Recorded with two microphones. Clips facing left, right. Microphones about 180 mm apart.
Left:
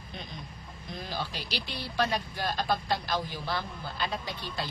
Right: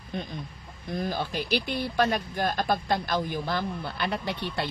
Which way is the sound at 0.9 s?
50° right (ahead or behind).